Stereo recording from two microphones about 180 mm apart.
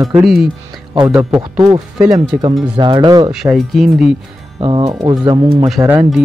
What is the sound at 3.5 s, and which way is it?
Speech, centre (ahead or behind).